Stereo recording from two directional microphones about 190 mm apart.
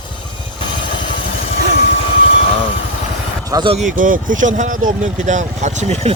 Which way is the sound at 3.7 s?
40° right (ahead or behind).